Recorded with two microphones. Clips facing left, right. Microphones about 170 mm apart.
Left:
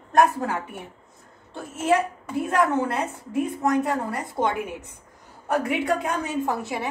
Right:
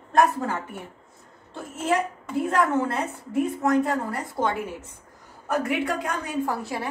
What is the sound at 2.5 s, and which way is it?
A woman's voice, 20° left (ahead or behind).